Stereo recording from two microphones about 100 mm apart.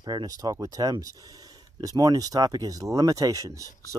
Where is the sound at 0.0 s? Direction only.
45° right (ahead or behind).